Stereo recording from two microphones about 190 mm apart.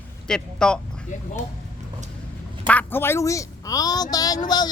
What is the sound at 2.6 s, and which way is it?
A woman's voice, 10° left (ahead or behind).